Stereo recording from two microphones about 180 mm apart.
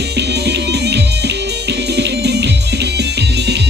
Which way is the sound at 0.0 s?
70° right (ahead or behind).